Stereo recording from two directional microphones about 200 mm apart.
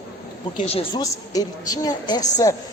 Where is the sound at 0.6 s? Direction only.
30° left (ahead or behind).